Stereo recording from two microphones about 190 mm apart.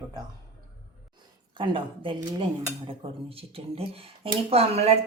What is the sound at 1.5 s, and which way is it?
Speech, 25° right (ahead or behind).